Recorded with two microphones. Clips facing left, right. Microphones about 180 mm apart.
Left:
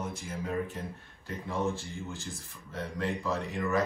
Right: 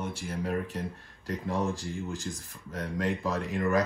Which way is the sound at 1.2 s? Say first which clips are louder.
Right 2 dB; 35° right (ahead or behind).